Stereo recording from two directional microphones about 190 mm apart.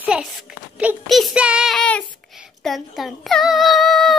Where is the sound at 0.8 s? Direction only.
5° right (ahead or behind).